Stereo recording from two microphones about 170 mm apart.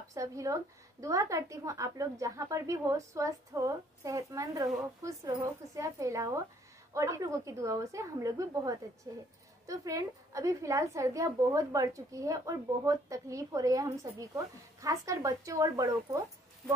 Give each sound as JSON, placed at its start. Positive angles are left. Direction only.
{"t": 0.1, "sound": "a woman's voice", "side_deg": -20}